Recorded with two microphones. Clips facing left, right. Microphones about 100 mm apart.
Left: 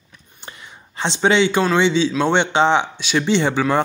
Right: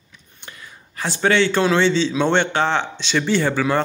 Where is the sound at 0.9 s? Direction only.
25° left (ahead or behind).